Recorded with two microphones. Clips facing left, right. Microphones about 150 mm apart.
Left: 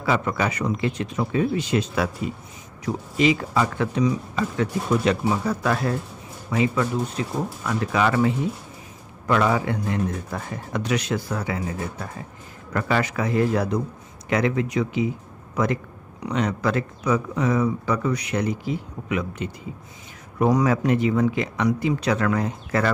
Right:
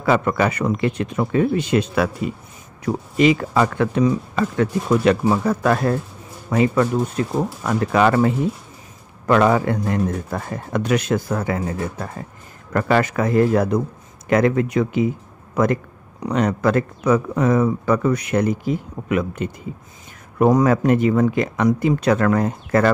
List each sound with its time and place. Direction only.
0.0 s speech: 55° right (ahead or behind)
9.3 s speech: 50° right (ahead or behind)